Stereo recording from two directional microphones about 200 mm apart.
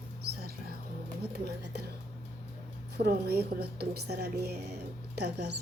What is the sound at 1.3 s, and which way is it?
Music, 55° right (ahead or behind).